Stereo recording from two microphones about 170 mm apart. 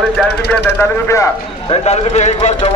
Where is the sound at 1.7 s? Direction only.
40° left (ahead or behind).